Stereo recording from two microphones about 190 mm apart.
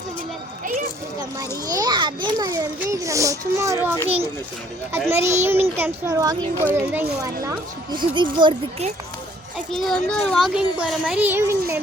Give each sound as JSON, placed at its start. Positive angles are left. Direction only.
{"t": 1.4, "sound": "a child's voice", "side_deg": -20}
{"t": 9.7, "sound": "a child's voice", "side_deg": 0}